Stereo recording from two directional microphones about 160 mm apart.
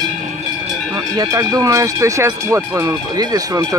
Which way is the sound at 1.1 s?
20° right (ahead or behind).